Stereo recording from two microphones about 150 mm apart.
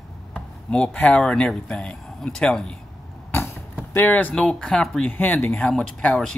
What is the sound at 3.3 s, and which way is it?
Speech, 15° left (ahead or behind).